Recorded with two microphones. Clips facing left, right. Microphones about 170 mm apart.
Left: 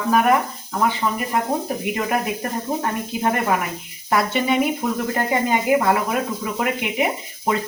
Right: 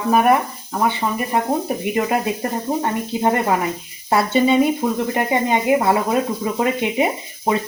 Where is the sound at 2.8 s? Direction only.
25° right (ahead or behind).